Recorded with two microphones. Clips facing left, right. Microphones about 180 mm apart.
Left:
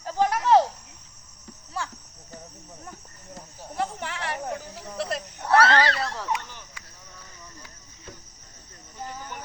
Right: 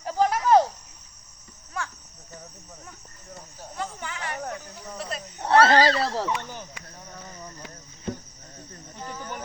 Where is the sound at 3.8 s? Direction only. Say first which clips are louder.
Left 4 dB; 70° left (ahead or behind).